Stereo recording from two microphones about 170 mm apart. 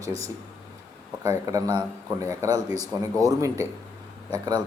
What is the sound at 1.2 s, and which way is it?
A man's voice, 20° right (ahead or behind).